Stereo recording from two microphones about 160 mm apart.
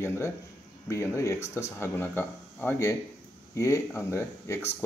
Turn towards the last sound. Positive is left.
turn(degrees=15)  # may be behind; listen again after turning